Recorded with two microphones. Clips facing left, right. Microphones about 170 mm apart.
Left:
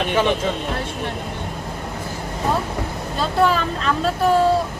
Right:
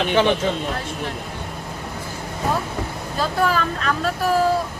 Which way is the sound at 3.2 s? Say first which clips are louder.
Left 2 dB; 30° left (ahead or behind).